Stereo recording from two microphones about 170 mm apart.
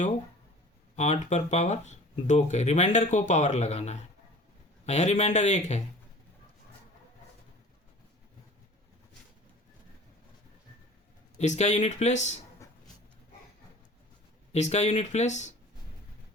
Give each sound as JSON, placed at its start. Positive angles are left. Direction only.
{"t": 0.9, "sound": "speech", "side_deg": 40}
{"t": 11.3, "sound": "speech", "side_deg": 40}
{"t": 14.5, "sound": "speech", "side_deg": 40}